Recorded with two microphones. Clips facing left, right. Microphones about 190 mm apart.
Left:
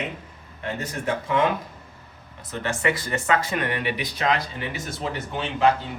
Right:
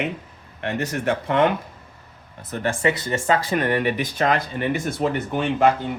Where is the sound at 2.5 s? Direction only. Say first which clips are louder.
Right 4 dB; 50° right (ahead or behind).